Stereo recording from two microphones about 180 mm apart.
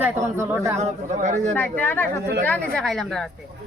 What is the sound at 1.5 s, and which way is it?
A woman's voice, 10° left (ahead or behind).